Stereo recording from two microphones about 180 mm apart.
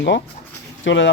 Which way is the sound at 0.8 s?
90° left.